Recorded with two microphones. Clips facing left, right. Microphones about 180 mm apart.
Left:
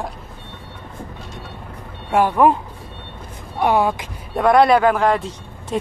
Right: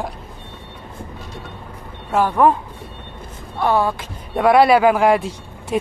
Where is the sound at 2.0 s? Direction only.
10° left (ahead or behind).